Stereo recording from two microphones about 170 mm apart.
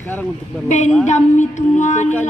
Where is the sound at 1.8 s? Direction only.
45° left (ahead or behind).